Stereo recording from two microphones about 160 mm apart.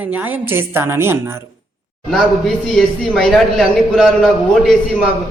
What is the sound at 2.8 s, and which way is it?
A man's voice, centre (ahead or behind).